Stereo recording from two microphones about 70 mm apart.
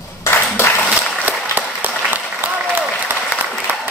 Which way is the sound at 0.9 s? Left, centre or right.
Right.